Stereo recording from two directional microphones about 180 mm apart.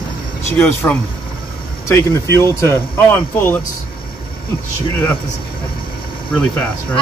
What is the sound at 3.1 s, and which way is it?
Speech, 10° left (ahead or behind).